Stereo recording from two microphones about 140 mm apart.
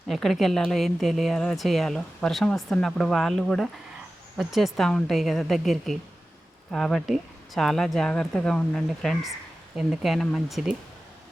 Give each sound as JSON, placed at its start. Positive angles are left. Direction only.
{"t": 0.1, "sound": "a woman's voice", "side_deg": 0}